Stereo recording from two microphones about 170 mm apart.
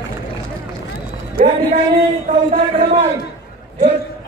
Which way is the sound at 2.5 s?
45° right (ahead or behind).